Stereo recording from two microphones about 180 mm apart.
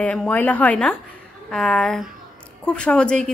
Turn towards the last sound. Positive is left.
turn(degrees=5)  # may be behind; listen again after turning